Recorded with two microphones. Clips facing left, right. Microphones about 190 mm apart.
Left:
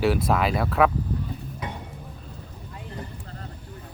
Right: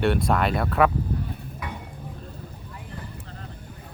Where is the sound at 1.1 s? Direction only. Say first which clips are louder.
Right 1 dB; 55° right (ahead or behind).